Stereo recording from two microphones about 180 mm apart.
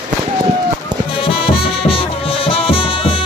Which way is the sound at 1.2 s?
30° left (ahead or behind).